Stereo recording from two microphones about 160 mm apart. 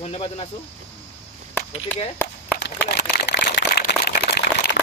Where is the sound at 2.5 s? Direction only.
90° left.